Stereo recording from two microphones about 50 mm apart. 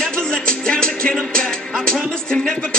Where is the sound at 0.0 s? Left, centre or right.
Centre.